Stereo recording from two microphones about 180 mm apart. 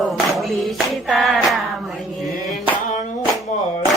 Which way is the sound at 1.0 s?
Centre (ahead or behind).